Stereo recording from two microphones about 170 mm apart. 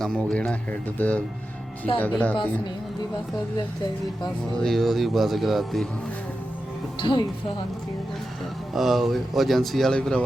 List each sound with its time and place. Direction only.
0.0 s speech: 5° left (ahead or behind)
4.6 s speech: centre (ahead or behind)
7.0 s speech: 30° left (ahead or behind)
8.7 s speech: centre (ahead or behind)